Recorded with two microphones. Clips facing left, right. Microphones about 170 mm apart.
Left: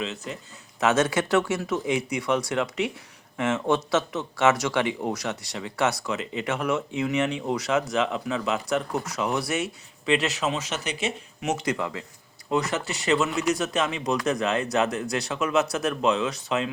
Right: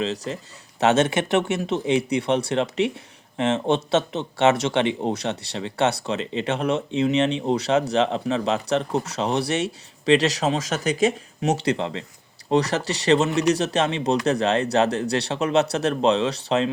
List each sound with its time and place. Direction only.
0.0 s speech: 30° right (ahead or behind)